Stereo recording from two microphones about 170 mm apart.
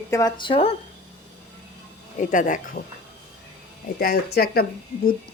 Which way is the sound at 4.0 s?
65° left (ahead or behind).